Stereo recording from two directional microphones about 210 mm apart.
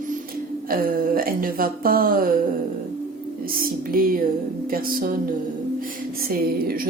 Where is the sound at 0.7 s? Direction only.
45° right (ahead or behind).